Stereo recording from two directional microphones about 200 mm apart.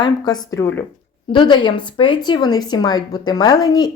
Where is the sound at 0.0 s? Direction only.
20° left (ahead or behind).